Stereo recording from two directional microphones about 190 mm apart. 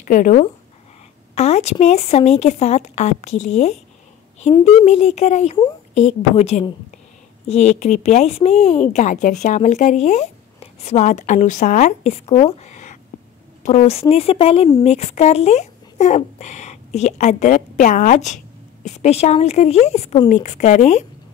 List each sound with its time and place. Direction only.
0.1 s speech: 45° left (ahead or behind)
1.3 s speech: 35° left (ahead or behind)